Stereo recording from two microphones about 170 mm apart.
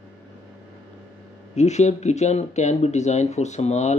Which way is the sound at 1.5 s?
40° left (ahead or behind).